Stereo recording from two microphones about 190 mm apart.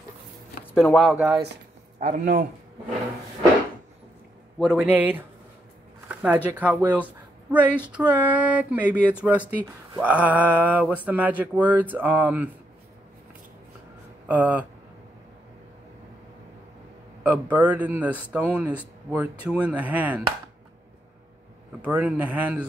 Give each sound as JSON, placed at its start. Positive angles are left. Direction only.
{"t": 0.8, "sound": "speech", "side_deg": 5}
{"t": 1.1, "sound": "speech", "side_deg": -5}
{"t": 2.0, "sound": "a man's voice", "side_deg": -45}
{"t": 4.6, "sound": "a man's voice", "side_deg": 0}
{"t": 6.2, "sound": "a man's voice", "side_deg": -10}
{"t": 14.2, "sound": "speech", "side_deg": -10}
{"t": 17.2, "sound": "a man's voice", "side_deg": -10}
{"t": 21.8, "sound": "a man's voice", "side_deg": -5}